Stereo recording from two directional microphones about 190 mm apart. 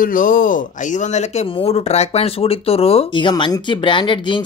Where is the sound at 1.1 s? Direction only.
35° left (ahead or behind).